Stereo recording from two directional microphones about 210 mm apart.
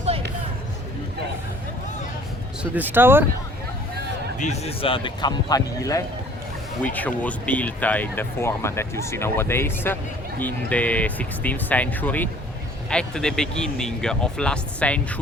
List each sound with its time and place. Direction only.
2.7 s speech: 10° right (ahead or behind)
4.4 s speech: 30° left (ahead or behind); by 15.0 s 5° left (ahead or behind)